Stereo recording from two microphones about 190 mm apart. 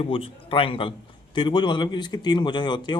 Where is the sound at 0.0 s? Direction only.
30° left (ahead or behind).